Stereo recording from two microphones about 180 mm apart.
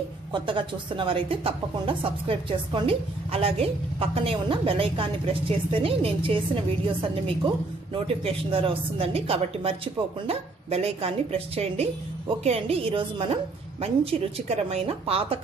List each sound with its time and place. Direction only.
0.3 s speech: 25° right (ahead or behind)